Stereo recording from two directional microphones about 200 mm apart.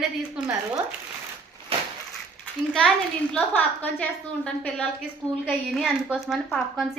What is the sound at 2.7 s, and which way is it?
A woman's voice, centre (ahead or behind).